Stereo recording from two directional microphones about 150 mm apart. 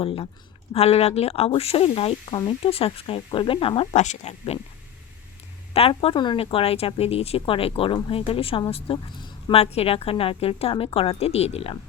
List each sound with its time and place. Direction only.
0.0 s a woman's voice: 40° left (ahead or behind)
3.9 s speech: 50° left (ahead or behind)
5.7 s a woman's voice: 40° left (ahead or behind)